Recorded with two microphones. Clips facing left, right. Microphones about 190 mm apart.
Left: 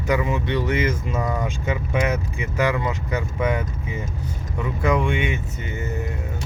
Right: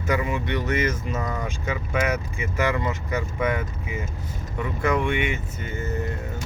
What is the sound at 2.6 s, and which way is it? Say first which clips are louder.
Speech: left 2 dB; 15° left (ahead or behind).